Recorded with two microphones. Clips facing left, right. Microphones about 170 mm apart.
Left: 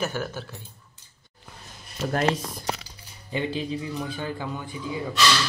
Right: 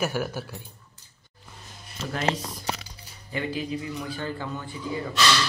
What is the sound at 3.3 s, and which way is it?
Music, 25° left (ahead or behind).